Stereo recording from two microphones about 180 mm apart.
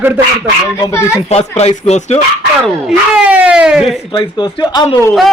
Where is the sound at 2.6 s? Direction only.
5° right (ahead or behind).